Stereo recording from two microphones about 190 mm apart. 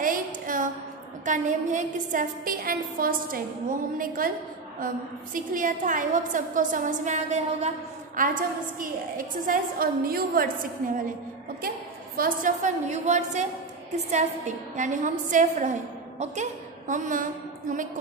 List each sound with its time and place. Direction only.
0.0 s a sound: 45° right (ahead or behind)
1.2 s a woman's voice: 40° right (ahead or behind)
12.2 s a woman's voice: 45° right (ahead or behind)